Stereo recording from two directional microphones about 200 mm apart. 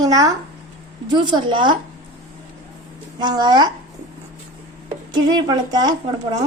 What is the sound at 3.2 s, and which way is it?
Speech, 20° right (ahead or behind).